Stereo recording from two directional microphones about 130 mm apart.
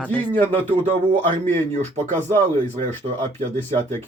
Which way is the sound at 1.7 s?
60° right (ahead or behind).